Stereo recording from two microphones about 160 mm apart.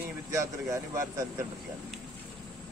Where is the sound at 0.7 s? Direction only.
20° right (ahead or behind).